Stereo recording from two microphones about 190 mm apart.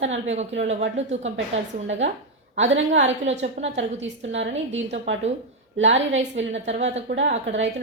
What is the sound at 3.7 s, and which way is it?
A woman's voice, 75° right (ahead or behind).